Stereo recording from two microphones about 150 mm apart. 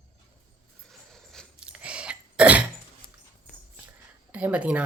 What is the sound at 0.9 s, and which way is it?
Cough, 5° left (ahead or behind).